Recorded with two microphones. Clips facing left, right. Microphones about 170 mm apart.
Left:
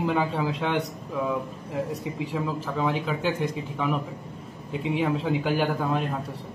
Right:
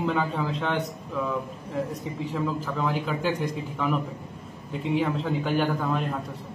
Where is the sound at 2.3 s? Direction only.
Centre (ahead or behind).